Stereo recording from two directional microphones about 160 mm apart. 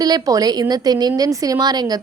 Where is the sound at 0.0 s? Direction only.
25° right (ahead or behind).